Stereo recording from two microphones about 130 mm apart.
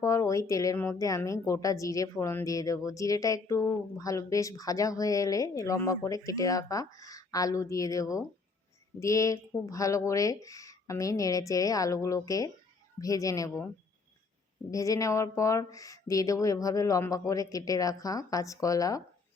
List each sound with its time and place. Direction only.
0.0 s speech: 25° left (ahead or behind)
14.7 s speech: 25° left (ahead or behind)